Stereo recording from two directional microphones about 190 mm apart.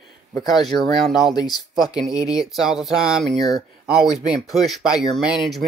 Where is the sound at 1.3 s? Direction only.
20° left (ahead or behind).